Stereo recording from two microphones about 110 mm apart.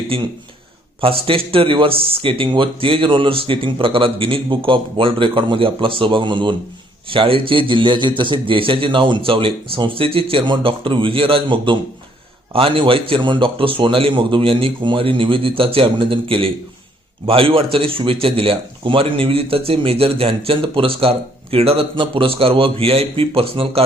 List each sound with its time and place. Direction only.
0.1 s speech: 55° right (ahead or behind)